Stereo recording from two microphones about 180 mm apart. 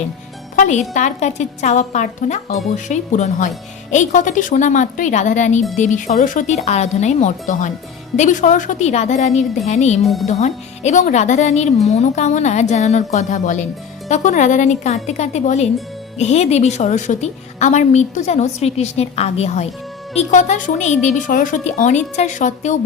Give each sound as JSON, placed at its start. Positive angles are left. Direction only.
{"t": 0.5, "sound": "a woman's voice", "side_deg": 45}
{"t": 10.0, "sound": "speech", "side_deg": 0}
{"t": 10.2, "sound": "a woman's voice", "side_deg": 40}